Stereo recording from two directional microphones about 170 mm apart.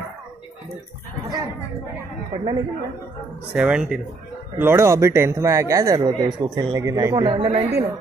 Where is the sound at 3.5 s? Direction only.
5° right (ahead or behind); by 7.7 s 35° right (ahead or behind).